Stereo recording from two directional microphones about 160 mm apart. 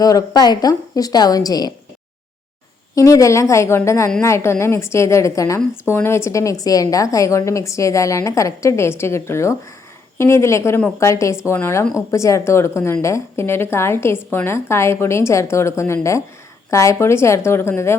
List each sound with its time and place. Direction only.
0.0 s a woman's voice: 20° left (ahead or behind)
2.9 s a woman's voice: 20° left (ahead or behind)